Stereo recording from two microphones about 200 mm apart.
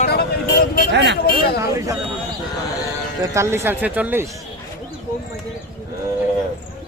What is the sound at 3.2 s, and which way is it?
Speech, 15° right (ahead or behind).